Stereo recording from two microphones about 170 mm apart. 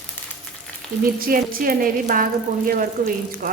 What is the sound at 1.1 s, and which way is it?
A woman's voice, 55° right (ahead or behind).